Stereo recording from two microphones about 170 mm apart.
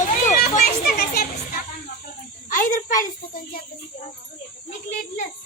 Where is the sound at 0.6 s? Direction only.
55° left (ahead or behind).